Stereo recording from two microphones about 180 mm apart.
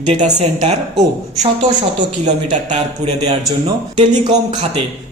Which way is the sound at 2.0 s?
40° right (ahead or behind).